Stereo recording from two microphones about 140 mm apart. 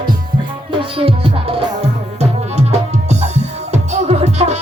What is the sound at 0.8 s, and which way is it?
Music, 40° right (ahead or behind).